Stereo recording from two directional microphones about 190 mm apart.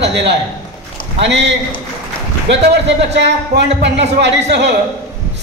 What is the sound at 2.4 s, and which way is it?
A man's voice, 65° right (ahead or behind).